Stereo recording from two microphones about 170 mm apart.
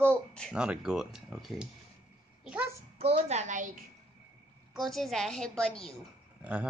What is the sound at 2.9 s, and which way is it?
Speech, 35° right (ahead or behind).